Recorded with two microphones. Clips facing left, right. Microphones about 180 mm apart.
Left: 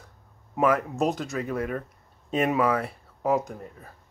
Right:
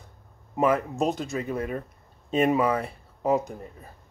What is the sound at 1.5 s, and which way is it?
Speech, 20° right (ahead or behind).